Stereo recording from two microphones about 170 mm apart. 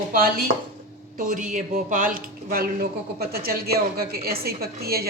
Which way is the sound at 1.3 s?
50° right (ahead or behind).